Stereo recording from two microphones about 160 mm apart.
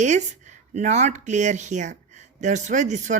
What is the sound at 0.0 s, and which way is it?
Speech, 50° right (ahead or behind).